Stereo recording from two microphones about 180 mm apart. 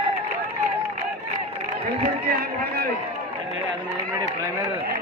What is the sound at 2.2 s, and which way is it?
Speech, 60° right (ahead or behind).